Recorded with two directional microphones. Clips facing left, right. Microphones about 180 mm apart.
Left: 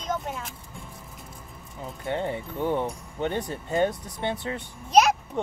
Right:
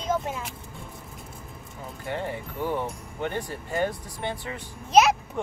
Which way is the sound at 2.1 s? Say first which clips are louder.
Left 3 dB; 20° left (ahead or behind).